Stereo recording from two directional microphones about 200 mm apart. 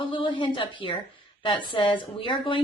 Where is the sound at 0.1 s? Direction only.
25° left (ahead or behind).